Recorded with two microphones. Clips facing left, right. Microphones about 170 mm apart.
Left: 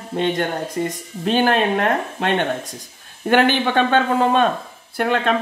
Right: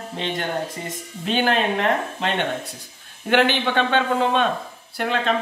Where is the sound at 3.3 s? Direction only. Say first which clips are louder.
Left 3 dB; 45° left (ahead or behind).